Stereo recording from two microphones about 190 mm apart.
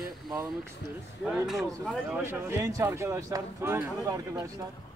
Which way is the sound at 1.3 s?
5° right (ahead or behind).